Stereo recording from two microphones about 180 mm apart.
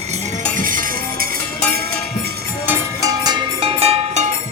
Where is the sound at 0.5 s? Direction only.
50° right (ahead or behind).